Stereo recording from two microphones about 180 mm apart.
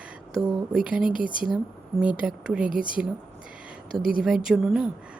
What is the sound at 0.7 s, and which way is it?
Speech, 5° right (ahead or behind).